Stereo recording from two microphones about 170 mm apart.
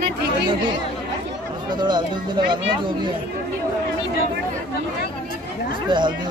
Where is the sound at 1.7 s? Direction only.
25° right (ahead or behind).